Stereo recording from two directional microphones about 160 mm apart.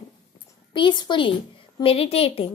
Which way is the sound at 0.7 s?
30° left (ahead or behind).